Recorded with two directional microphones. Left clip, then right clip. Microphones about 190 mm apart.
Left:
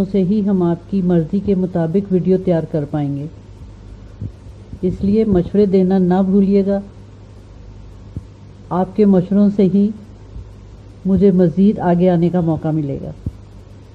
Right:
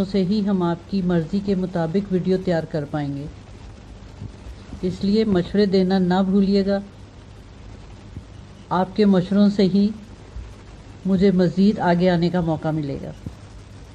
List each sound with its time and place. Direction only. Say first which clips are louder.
0.0 s speech: left 5 dB; 25° left (ahead or behind)
4.8 s speech: left 5 dB; 25° left (ahead or behind)
8.6 s speech: left 4 dB; 20° left (ahead or behind)
11.1 s speech: left 5 dB; 25° left (ahead or behind)